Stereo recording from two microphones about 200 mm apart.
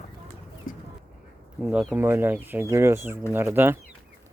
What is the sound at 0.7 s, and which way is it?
Bird, 45° left (ahead or behind).